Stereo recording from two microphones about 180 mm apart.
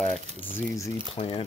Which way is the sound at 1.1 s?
35° left (ahead or behind).